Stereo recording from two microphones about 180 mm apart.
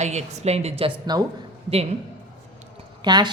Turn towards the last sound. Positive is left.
turn(degrees=-25)  # may be behind; listen again after turning